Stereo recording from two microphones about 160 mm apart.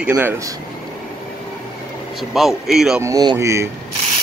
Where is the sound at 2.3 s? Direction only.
Centre (ahead or behind).